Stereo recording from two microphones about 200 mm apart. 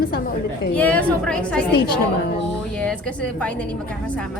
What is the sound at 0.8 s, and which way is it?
Speech, 5° left (ahead or behind).